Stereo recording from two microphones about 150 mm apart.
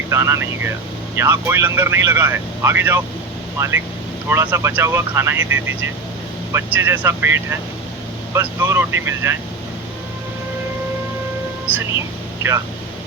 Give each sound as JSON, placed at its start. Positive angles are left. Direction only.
{"t": 0.1, "sound": "speech", "side_deg": -15}
{"t": 4.3, "sound": "speech", "side_deg": -15}
{"t": 11.7, "sound": "speech", "side_deg": -15}